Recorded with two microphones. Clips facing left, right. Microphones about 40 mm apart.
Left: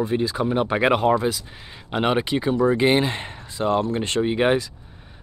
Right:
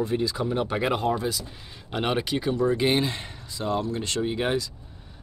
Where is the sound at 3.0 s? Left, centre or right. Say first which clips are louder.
Left 4 dB; left.